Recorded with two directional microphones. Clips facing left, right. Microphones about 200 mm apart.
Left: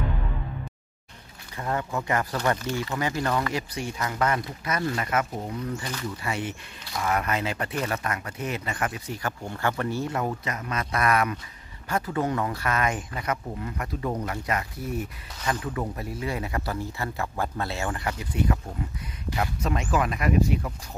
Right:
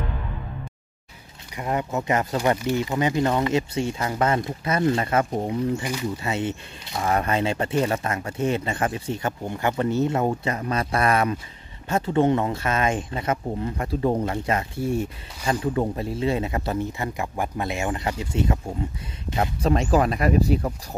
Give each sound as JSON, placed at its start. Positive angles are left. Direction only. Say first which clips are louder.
{"t": 1.6, "sound": "speech", "louder": "right 3 dB", "side_deg": -20}
{"t": 5.2, "sound": "speech", "louder": "right 7 dB", "side_deg": -40}
{"t": 5.8, "sound": "speech", "louder": "right 6 dB", "side_deg": -15}
{"t": 6.1, "sound": "speech", "louder": "right 5 dB", "side_deg": -25}